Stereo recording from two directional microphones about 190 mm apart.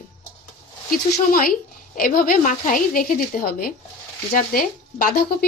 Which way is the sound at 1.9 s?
50° left (ahead or behind).